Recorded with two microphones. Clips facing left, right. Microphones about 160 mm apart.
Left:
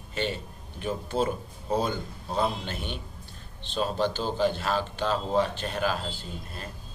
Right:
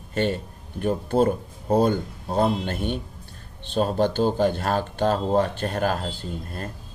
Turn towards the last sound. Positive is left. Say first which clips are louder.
# right 7 dB
turn(degrees=-55)  # may be behind; listen again after turning